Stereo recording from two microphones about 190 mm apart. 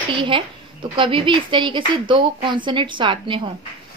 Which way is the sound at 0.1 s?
25° right (ahead or behind).